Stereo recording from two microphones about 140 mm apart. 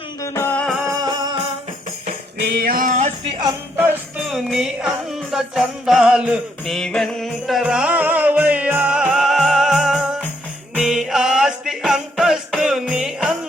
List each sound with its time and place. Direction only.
0.2 s music: 15° left (ahead or behind)
0.7 s music: centre (ahead or behind)
0.9 s music: 30° right (ahead or behind)
2.6 s a sound: 85° right
3.8 s music: 10° right (ahead or behind)